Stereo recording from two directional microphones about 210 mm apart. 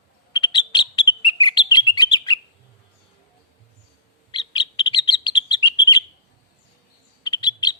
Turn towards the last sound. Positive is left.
turn(degrees=20)  # may be behind; listen again after turning